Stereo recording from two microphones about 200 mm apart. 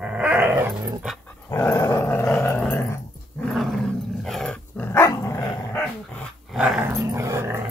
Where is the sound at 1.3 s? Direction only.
10° left (ahead or behind).